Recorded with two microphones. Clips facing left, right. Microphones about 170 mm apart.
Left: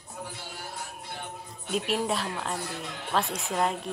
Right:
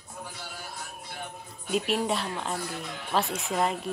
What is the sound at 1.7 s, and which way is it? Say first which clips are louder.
Speech: right 1 dB; centre (ahead or behind).